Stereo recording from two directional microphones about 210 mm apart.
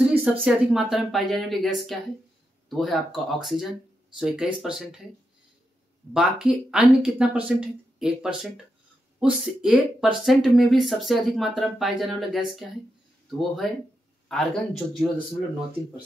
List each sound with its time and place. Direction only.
0.1 s speech: 5° right (ahead or behind)
6.1 s speech: 5° right (ahead or behind)